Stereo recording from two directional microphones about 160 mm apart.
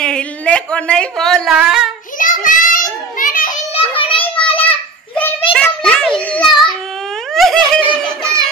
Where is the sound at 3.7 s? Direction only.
35° left (ahead or behind).